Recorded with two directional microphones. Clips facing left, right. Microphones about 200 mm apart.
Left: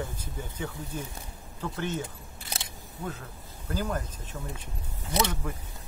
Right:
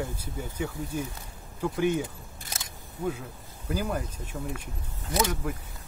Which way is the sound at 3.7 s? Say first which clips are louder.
Right 1 dB; 10° right (ahead or behind).